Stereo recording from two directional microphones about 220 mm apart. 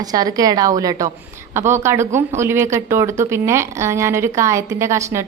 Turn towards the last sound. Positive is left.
turn(degrees=-10)  # may be behind; listen again after turning